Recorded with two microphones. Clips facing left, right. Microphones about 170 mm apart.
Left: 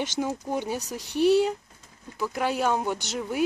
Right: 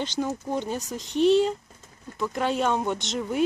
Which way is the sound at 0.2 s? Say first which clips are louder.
Right 2 dB; 10° left (ahead or behind).